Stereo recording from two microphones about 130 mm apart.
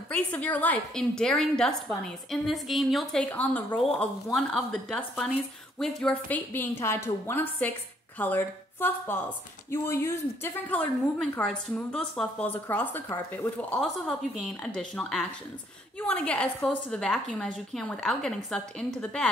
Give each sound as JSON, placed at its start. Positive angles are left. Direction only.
{"t": 0.1, "sound": "a woman's voice", "side_deg": 10}
{"t": 3.3, "sound": "a woman's voice", "side_deg": 10}
{"t": 11.3, "sound": "a woman's voice", "side_deg": 5}